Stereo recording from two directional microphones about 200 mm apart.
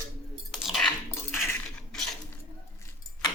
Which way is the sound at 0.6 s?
Centre (ahead or behind).